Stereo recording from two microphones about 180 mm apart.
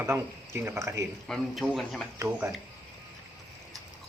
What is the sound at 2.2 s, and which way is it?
Speech, 15° right (ahead or behind).